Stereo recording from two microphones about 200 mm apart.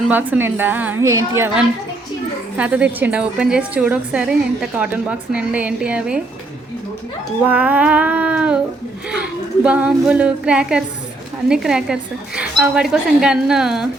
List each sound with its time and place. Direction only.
0.0 s a woman's voice: 10° right (ahead or behind)
7.4 s a woman's voice: 5° right (ahead or behind)